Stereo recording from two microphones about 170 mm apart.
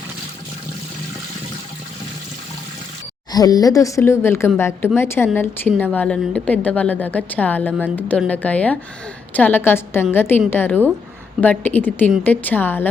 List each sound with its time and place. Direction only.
3.3 s a woman's voice: 20° left (ahead or behind)